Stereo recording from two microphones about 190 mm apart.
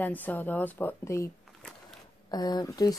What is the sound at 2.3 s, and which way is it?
Speech, 20° left (ahead or behind).